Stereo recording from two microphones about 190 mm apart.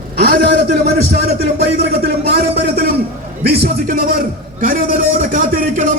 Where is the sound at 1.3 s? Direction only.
35° right (ahead or behind).